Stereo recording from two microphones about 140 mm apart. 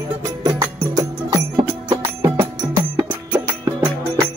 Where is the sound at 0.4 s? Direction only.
25° right (ahead or behind).